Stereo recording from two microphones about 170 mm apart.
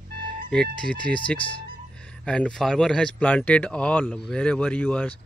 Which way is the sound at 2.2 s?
5° left (ahead or behind).